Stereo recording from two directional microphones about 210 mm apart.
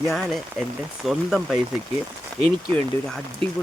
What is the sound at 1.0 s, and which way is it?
Speech, centre (ahead or behind).